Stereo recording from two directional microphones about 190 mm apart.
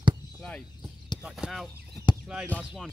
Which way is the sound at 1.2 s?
Centre (ahead or behind).